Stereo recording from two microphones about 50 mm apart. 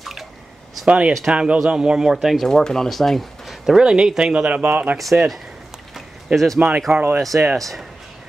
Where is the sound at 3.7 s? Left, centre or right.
Centre; by 4.9 s right.